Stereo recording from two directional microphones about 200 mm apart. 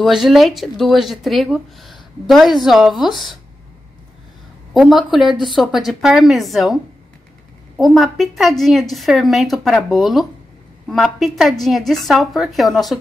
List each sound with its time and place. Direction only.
0.0 s speech: centre (ahead or behind)
4.7 s speech: centre (ahead or behind)